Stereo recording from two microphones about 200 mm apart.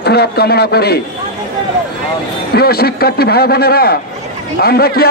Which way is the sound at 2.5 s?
50° left (ahead or behind).